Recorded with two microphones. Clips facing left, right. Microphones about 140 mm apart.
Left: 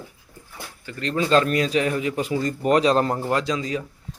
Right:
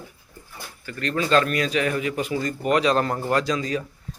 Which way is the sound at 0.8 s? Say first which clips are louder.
Left 1 dB; 25° left (ahead or behind).